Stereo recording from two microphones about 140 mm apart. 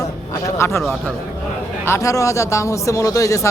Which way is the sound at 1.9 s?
25° left (ahead or behind).